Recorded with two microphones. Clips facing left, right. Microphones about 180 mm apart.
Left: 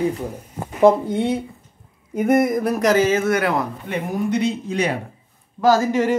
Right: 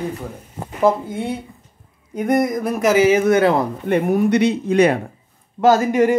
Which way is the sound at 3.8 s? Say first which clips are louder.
Right 7 dB; 60° right (ahead or behind).